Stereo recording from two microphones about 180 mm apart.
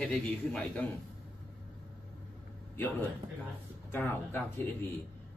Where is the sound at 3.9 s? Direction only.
10° left (ahead or behind).